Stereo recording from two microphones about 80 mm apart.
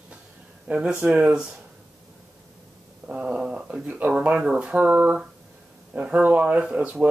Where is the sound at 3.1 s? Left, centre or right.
Centre.